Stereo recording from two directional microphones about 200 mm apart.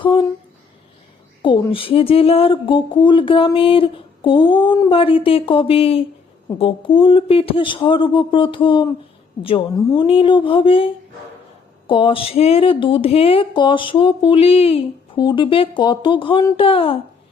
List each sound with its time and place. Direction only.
0.0 s speech: 25° left (ahead or behind)
1.4 s a woman's voice: 25° left (ahead or behind)